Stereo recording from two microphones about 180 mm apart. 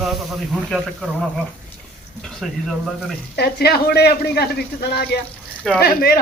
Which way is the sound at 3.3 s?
60° left (ahead or behind).